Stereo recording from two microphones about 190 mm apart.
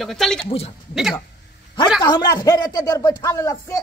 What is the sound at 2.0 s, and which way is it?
Speech, 20° left (ahead or behind).